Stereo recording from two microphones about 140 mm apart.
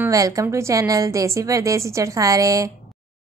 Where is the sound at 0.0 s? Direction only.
25° right (ahead or behind).